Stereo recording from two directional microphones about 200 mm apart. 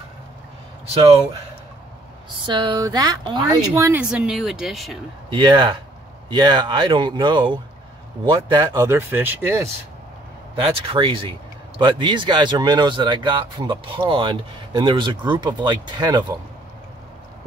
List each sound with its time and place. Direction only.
0.9 s speech: 30° right (ahead or behind)
2.4 s speech: 25° right (ahead or behind); by 4.9 s centre (ahead or behind)
5.3 s speech: 25° right (ahead or behind)
10.6 s speech: 25° right (ahead or behind)